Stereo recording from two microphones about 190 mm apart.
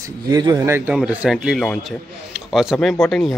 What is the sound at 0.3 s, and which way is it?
Speech, 20° right (ahead or behind).